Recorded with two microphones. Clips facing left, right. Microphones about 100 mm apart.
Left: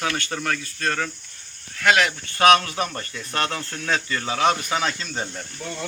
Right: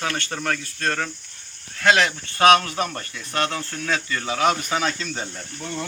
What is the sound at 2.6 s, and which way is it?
Speech, 10° left (ahead or behind).